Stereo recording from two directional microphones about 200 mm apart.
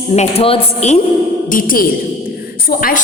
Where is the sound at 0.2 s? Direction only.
30° left (ahead or behind).